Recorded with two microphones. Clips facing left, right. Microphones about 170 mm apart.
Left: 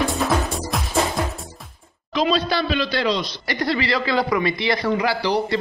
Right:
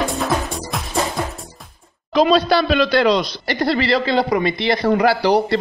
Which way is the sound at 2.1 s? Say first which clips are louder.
Right 6 dB; 40° right (ahead or behind).